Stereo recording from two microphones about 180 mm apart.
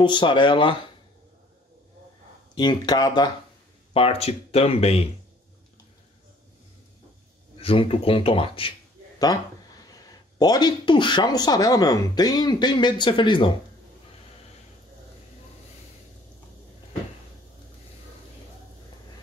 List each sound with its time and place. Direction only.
0.0 s speech: 25° left (ahead or behind)
2.5 s speech: 25° left (ahead or behind)
3.9 s speech: 35° left (ahead or behind)
7.5 s speech: 30° left (ahead or behind)